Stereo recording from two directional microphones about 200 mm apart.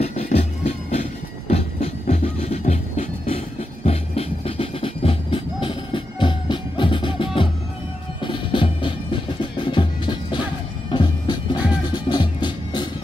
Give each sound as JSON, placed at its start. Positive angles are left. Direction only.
{"t": 0.0, "sound": "music", "side_deg": 30}